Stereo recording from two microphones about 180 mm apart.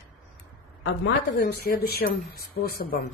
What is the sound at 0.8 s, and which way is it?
A woman's voice, 65° left (ahead or behind).